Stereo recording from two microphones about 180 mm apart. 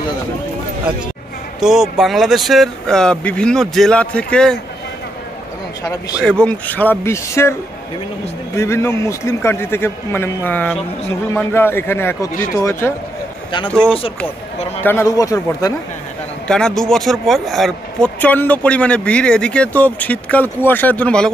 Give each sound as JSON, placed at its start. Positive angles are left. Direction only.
{"t": 1.6, "sound": "speech", "side_deg": 0}
{"t": 6.2, "sound": "a man's voice", "side_deg": 5}
{"t": 8.5, "sound": "a man's voice", "side_deg": 15}
{"t": 13.7, "sound": "speech", "side_deg": 5}
{"t": 16.4, "sound": "a man's voice", "side_deg": 5}